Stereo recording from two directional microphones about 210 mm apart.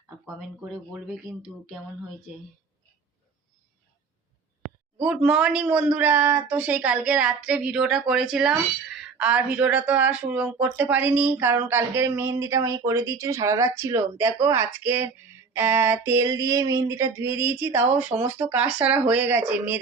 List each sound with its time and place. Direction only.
0.3 s speech: 5° right (ahead or behind)
4.9 s speech: 5° right (ahead or behind)